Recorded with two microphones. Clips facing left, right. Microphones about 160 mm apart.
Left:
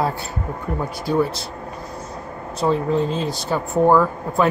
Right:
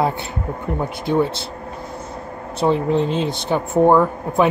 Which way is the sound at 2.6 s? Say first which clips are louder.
Right 2 dB; 25° right (ahead or behind).